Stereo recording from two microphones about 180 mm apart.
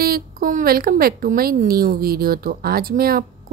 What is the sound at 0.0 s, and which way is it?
A woman's voice, 55° right (ahead or behind).